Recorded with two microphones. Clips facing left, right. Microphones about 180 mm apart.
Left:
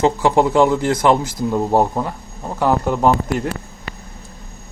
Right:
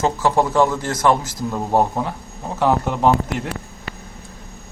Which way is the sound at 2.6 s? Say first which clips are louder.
Left 1 dB; centre (ahead or behind).